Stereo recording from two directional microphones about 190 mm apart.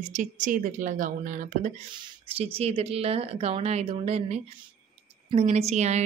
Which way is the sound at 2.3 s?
30° right (ahead or behind).